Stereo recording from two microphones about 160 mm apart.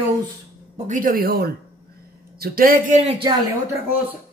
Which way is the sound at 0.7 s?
50° right (ahead or behind).